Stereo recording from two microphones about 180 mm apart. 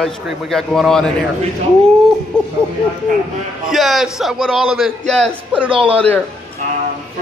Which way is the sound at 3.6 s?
Centre (ahead or behind).